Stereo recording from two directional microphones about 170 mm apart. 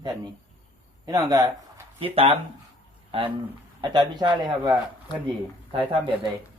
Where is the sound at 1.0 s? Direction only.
20° right (ahead or behind).